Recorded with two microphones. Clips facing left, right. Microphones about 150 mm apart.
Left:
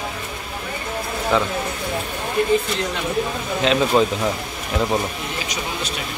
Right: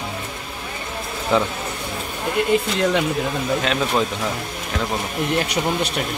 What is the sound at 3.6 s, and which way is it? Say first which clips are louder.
Speech: left 9 dB; centre (ahead or behind).